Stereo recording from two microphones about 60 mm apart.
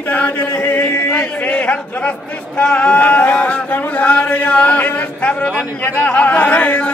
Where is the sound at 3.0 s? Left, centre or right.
Left.